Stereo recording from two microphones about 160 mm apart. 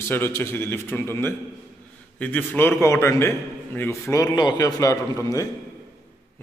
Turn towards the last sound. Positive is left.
turn(degrees=20)  # may be behind; listen again after turning